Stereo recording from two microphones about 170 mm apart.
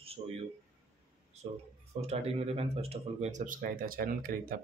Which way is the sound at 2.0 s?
35° right (ahead or behind).